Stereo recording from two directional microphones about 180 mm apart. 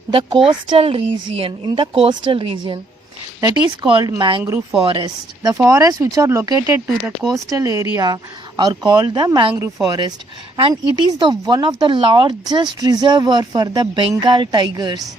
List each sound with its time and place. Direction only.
0.1 s speech: 30° right (ahead or behind)
3.8 s speech: 30° right (ahead or behind)